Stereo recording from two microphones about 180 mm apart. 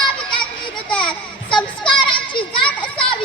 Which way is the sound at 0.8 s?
5° left (ahead or behind).